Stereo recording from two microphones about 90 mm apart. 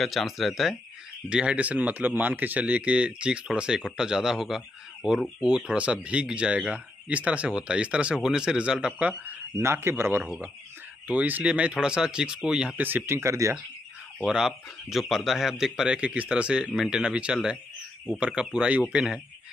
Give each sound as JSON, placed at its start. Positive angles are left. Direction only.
{"t": 0.0, "sound": "speech", "side_deg": 0}
{"t": 1.3, "sound": "speech", "side_deg": -10}
{"t": 11.1, "sound": "speech", "side_deg": -15}
{"t": 12.8, "sound": "speech", "side_deg": -25}
{"t": 14.2, "sound": "speech", "side_deg": -5}